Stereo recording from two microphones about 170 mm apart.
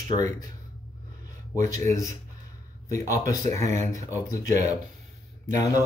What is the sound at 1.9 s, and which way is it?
Speech, 20° left (ahead or behind).